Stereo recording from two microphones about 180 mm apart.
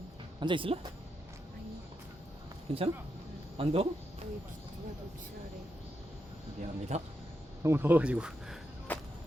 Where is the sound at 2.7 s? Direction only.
30° right (ahead or behind).